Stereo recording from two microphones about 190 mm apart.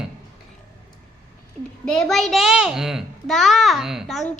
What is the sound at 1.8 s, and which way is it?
A child's voice, 5° left (ahead or behind).